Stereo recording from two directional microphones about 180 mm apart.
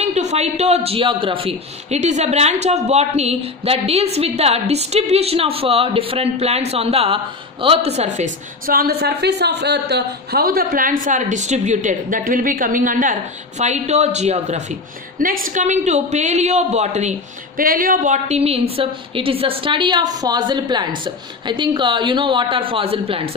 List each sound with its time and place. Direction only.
0.0 s a woman's voice: 40° right (ahead or behind)
8.6 s a woman's voice: 55° right (ahead or behind); by 14.6 s 40° right (ahead or behind)
15.1 s a woman's voice: 50° right (ahead or behind)
17.6 s a woman's voice: 50° right (ahead or behind)
18.3 s a woman's voice: 35° right (ahead or behind)